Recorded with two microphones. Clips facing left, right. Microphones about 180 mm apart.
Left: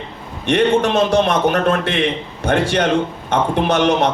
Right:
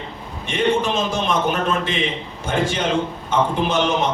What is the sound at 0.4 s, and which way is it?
A man's voice, 70° left (ahead or behind).